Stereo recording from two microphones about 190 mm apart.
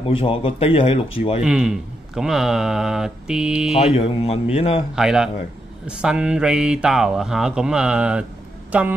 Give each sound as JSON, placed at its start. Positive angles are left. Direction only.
{"t": 0.0, "sound": "speech", "side_deg": 30}
{"t": 1.4, "sound": "speech", "side_deg": -5}
{"t": 3.7, "sound": "speech", "side_deg": 30}
{"t": 4.9, "sound": "speech", "side_deg": -5}